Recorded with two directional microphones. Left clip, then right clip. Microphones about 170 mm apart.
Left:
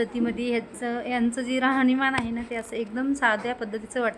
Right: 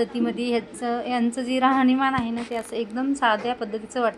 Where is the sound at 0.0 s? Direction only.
5° left (ahead or behind).